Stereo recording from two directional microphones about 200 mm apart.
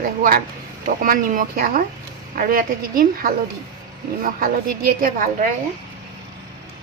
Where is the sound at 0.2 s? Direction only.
50° right (ahead or behind).